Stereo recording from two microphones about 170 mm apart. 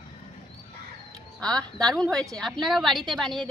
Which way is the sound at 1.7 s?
5° left (ahead or behind).